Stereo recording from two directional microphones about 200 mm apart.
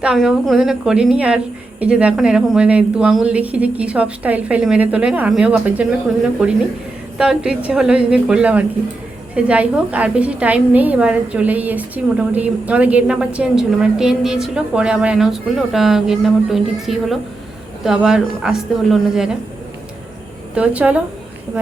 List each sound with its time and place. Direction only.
0.0 s a woman's voice: 5° right (ahead or behind)
20.6 s a woman's voice: 5° right (ahead or behind)